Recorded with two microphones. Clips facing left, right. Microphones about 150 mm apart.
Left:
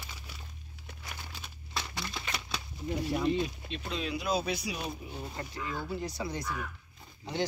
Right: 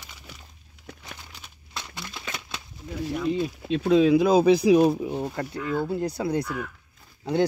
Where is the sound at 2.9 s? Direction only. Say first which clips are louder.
Right 2 dB; 20° left (ahead or behind).